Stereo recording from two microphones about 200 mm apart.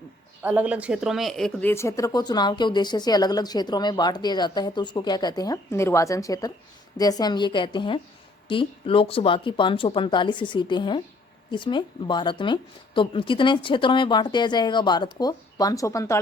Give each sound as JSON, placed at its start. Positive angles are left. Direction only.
{"t": 0.4, "sound": "speech", "side_deg": -5}